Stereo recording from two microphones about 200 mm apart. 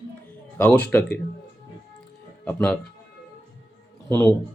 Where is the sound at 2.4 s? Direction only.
5° left (ahead or behind).